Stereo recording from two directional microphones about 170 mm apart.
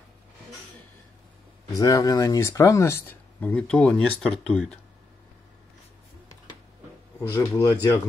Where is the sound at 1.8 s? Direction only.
20° left (ahead or behind); by 4.7 s 5° left (ahead or behind).